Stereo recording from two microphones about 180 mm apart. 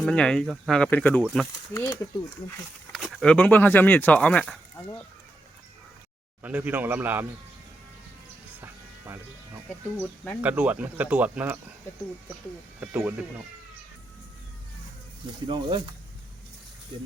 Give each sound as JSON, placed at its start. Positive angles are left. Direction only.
{"t": 0.0, "sound": "speech", "side_deg": 5}
{"t": 1.7, "sound": "speech", "side_deg": 15}
{"t": 2.9, "sound": "speech", "side_deg": 0}
{"t": 4.8, "sound": "speech", "side_deg": 15}
{"t": 6.4, "sound": "speech", "side_deg": -10}
{"t": 8.6, "sound": "music", "side_deg": -10}
{"t": 9.6, "sound": "speech", "side_deg": 10}
{"t": 10.4, "sound": "speech", "side_deg": -10}
{"t": 12.8, "sound": "speech", "side_deg": -5}
{"t": 15.4, "sound": "speech", "side_deg": -25}